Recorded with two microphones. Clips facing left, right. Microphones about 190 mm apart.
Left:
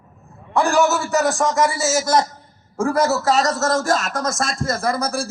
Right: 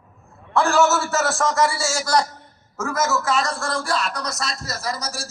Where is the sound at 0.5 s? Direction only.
15° left (ahead or behind).